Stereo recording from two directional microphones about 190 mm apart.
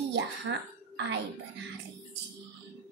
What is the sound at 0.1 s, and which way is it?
Speech, 65° right (ahead or behind).